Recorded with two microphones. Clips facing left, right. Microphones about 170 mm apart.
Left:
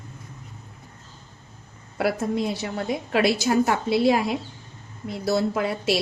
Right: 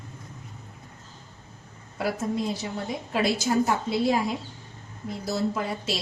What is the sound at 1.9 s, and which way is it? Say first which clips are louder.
A woman's voice: left 4 dB; 70° left (ahead or behind).